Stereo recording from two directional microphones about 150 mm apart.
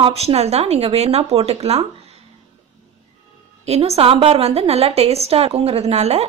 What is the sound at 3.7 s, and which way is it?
A woman's voice, 45° right (ahead or behind).